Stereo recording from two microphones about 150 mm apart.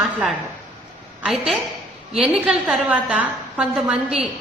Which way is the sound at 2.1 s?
5° right (ahead or behind).